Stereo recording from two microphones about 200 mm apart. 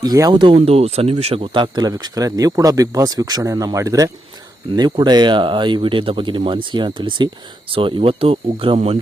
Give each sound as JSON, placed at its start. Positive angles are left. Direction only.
{"t": 0.0, "sound": "speech", "side_deg": -20}